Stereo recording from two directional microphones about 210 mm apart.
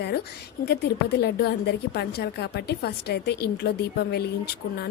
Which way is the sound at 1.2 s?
50° left (ahead or behind).